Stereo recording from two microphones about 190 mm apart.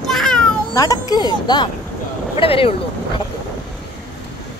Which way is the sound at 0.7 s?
20° left (ahead or behind).